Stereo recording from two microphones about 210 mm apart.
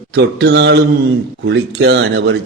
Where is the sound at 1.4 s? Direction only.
55° right (ahead or behind).